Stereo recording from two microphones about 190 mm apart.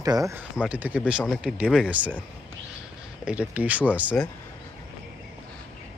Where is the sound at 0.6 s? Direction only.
5° right (ahead or behind).